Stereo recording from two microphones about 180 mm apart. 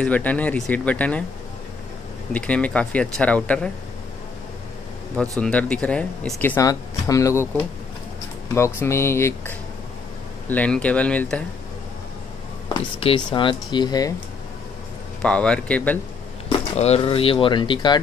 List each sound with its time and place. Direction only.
0.0 s speech: 10° left (ahead or behind)
2.3 s speech: 5° left (ahead or behind)
5.4 s speech: 5° left (ahead or behind)
8.5 s speech: 15° left (ahead or behind)
13.0 s speech: 30° left (ahead or behind)
15.2 s speech: 5° left (ahead or behind)
16.4 s speech: 35° left (ahead or behind)